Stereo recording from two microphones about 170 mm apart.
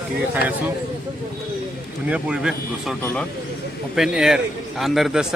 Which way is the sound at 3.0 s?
5° left (ahead or behind).